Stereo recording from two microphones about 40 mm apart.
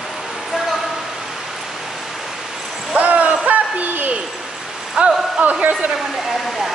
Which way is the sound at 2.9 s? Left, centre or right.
Right.